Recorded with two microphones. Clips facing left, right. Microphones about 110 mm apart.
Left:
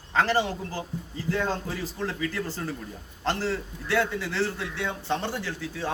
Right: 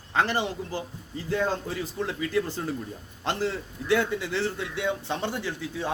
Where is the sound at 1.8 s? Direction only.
15° right (ahead or behind).